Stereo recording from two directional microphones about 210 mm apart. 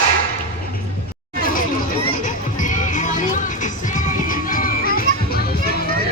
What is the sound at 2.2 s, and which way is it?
Music, 40° left (ahead or behind).